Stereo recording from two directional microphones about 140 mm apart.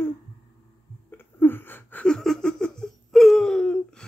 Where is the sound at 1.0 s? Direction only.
15° left (ahead or behind).